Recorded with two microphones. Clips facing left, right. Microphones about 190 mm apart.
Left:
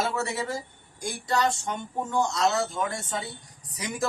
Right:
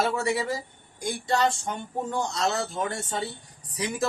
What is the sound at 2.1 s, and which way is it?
Speech, 35° right (ahead or behind).